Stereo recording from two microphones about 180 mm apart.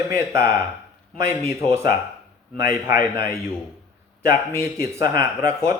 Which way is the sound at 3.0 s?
55° left (ahead or behind).